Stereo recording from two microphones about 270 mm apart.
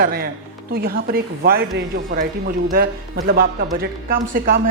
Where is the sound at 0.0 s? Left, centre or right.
Right.